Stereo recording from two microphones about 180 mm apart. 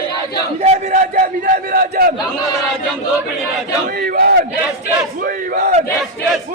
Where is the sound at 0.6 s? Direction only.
40° right (ahead or behind).